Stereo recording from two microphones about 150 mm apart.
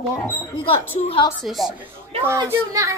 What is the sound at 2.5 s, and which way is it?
Speech, 20° right (ahead or behind).